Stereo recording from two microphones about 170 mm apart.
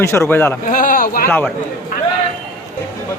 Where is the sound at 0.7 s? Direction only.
50° left (ahead or behind).